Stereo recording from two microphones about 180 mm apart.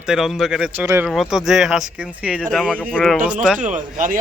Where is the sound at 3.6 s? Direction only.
45° right (ahead or behind).